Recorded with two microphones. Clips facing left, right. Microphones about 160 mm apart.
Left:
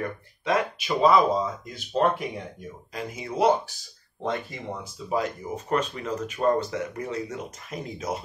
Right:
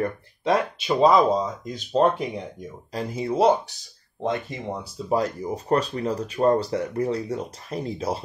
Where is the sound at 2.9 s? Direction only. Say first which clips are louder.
Right 7 dB; 35° right (ahead or behind).